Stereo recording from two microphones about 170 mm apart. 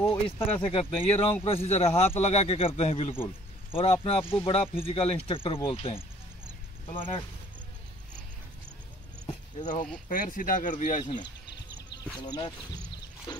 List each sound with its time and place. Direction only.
0.0 s speech: 15° left (ahead or behind)
0.6 s speech: 35° left (ahead or behind)
10.0 s speech: 50° left (ahead or behind)
12.2 s speech: 25° left (ahead or behind)